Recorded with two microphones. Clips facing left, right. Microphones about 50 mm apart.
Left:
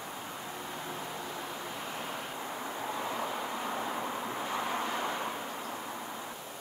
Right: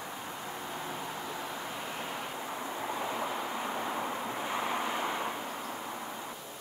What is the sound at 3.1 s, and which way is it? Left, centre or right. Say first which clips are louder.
Vehicle: right 1 dB; centre.